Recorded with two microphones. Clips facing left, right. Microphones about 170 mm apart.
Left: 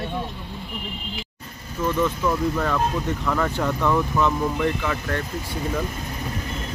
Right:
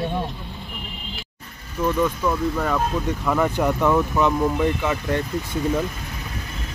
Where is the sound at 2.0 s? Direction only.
5° right (ahead or behind).